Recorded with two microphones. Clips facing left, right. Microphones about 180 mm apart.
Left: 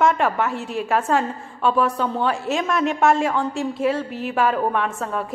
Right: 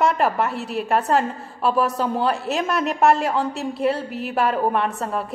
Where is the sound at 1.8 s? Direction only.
40° right (ahead or behind).